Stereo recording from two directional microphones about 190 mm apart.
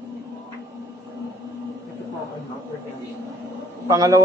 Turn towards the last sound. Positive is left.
turn(degrees=-15)  # may be behind; listen again after turning